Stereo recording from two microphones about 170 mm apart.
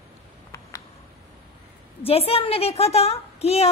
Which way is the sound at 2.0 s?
35° left (ahead or behind).